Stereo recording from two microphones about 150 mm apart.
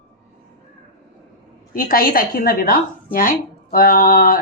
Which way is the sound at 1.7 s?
70° left (ahead or behind).